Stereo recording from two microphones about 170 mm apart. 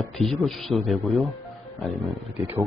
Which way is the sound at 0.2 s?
Centre (ahead or behind).